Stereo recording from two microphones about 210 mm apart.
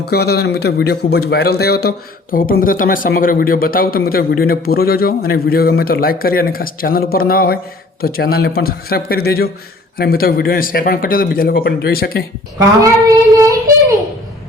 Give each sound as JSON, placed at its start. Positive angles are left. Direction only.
{"t": 0.0, "sound": "speech", "side_deg": 50}
{"t": 12.8, "sound": "child singing", "side_deg": -15}